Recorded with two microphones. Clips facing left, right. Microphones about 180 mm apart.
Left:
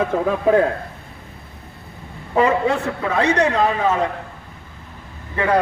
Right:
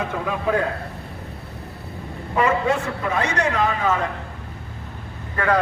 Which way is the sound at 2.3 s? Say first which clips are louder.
Left 3 dB; 35° left (ahead or behind).